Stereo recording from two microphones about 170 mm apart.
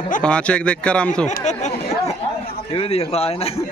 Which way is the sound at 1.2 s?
45° left (ahead or behind).